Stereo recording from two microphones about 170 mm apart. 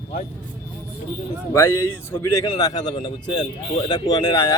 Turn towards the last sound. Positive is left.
turn(degrees=20)  # may be behind; listen again after turning